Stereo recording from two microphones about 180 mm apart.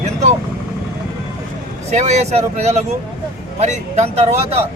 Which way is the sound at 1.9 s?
40° right (ahead or behind).